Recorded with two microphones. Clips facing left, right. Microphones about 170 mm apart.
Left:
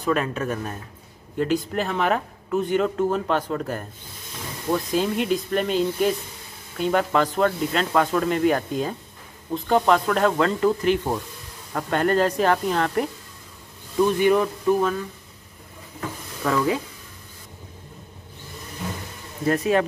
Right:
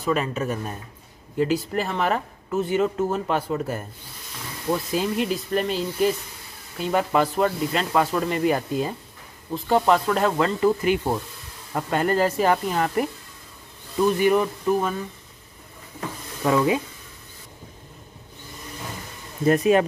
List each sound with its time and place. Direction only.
0.0 s speech: 5° right (ahead or behind)
16.4 s speech: 15° right (ahead or behind)
19.4 s speech: 20° right (ahead or behind)